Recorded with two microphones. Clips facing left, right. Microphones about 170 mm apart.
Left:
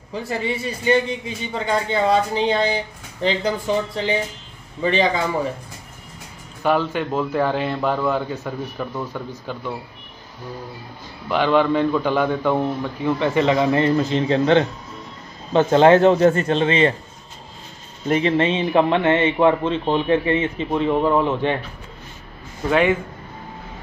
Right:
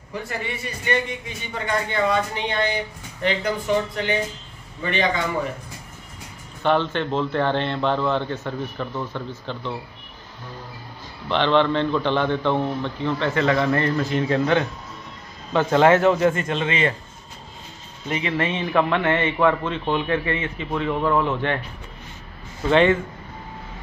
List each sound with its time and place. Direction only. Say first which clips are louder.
0.1 s a man's voice: left 5 dB; 30° left (ahead or behind)
6.6 s a man's voice: left 1 dB; 5° left (ahead or behind)
11.2 s a man's voice: left 2 dB; 5° left (ahead or behind); by 16.9 s 35° left (ahead or behind)
18.0 s speech: left 8 dB; 45° left (ahead or behind)
18.3 s a man's voice: even; 20° left (ahead or behind)
22.7 s a man's voice: right 1 dB; 5° left (ahead or behind)